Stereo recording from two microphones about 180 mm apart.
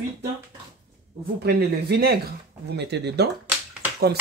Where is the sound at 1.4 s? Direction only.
65° right (ahead or behind).